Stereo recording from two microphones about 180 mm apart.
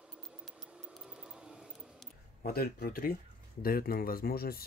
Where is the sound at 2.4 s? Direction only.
55° left (ahead or behind).